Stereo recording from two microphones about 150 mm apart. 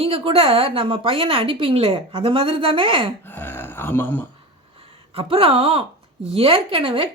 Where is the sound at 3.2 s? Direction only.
15° left (ahead or behind).